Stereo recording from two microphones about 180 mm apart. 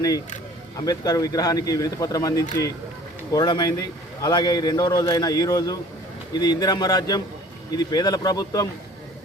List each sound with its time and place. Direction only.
0.9 s speech: 20° left (ahead or behind)